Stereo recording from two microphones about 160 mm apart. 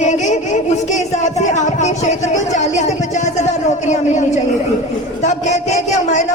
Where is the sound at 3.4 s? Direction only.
45° left (ahead or behind).